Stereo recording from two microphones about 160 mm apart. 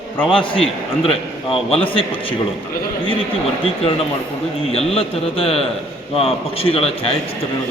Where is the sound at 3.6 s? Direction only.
35° left (ahead or behind).